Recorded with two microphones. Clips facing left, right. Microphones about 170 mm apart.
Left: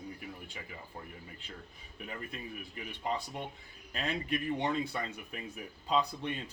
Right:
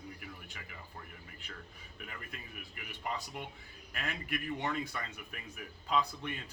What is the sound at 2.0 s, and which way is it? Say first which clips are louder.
Speech: left 7 dB; 30° left (ahead or behind).